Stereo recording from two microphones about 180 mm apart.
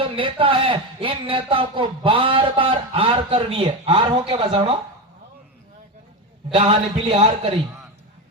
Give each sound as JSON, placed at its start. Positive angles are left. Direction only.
{"t": 0.0, "sound": "speech", "side_deg": -30}
{"t": 6.5, "sound": "speech", "side_deg": -30}